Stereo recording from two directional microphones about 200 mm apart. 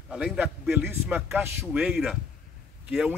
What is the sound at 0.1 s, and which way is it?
A man's voice, 5° right (ahead or behind).